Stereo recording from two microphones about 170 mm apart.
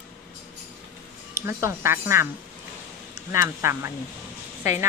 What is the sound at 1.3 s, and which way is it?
Speech, 15° right (ahead or behind).